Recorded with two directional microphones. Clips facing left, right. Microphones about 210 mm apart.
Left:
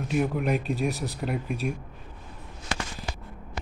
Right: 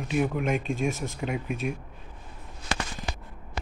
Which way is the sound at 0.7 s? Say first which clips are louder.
Even; 35° left (ahead or behind).